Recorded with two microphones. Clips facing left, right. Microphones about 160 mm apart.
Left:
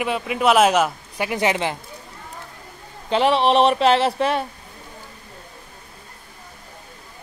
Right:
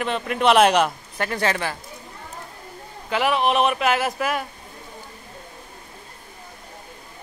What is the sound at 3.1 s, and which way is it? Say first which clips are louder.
Speech: left 4 dB; 30° left (ahead or behind).